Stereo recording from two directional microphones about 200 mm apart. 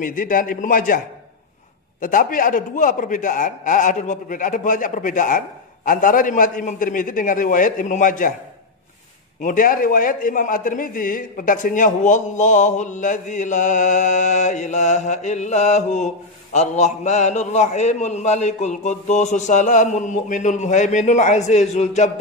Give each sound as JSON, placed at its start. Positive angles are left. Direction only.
{"t": 0.0, "sound": "a man's voice", "side_deg": 45}
{"t": 9.4, "sound": "a man's voice", "side_deg": 45}